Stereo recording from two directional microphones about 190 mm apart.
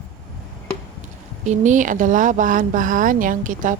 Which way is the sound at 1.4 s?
40° right (ahead or behind).